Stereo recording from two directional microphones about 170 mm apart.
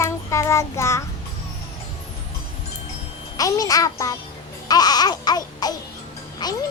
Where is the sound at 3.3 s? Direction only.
20° left (ahead or behind).